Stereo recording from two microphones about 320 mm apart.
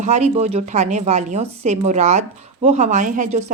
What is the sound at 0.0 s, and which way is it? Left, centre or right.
A woman's voice, right.